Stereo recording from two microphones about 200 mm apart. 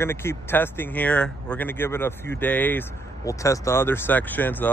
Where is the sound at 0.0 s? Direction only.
10° left (ahead or behind).